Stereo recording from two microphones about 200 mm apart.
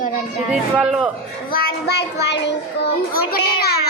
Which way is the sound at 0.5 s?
5° right (ahead or behind).